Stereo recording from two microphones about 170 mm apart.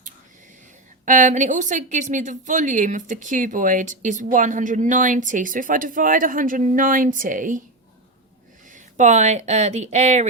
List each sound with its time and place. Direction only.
1.0 s a woman's voice: 50° right (ahead or behind)
8.7 s speech: 45° right (ahead or behind)